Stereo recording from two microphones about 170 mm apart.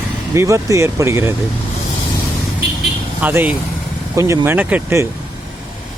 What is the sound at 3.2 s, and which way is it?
Speech, 10° right (ahead or behind).